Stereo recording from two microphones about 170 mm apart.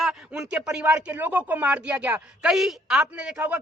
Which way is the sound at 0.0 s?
5° right (ahead or behind).